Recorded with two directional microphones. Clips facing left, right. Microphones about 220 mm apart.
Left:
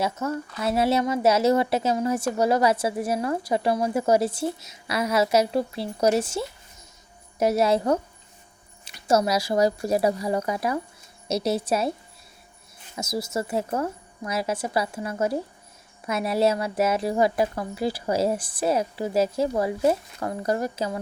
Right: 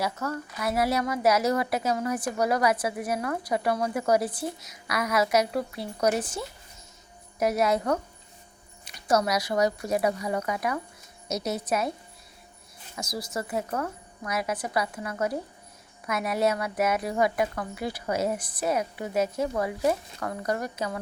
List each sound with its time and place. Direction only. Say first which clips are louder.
0.0 s speech: left 4 dB; 25° left (ahead or behind)
13.0 s speech: left 5 dB; 25° left (ahead or behind)